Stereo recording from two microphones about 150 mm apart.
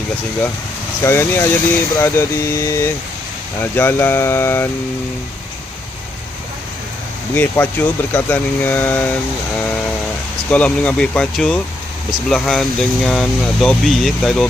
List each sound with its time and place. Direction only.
1.0 s speech: 15° left (ahead or behind)
7.3 s speech: 15° left (ahead or behind)
10.5 s speech: 10° left (ahead or behind)